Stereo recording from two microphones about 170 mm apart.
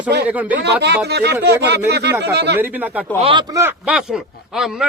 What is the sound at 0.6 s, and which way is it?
Speech, 80° right.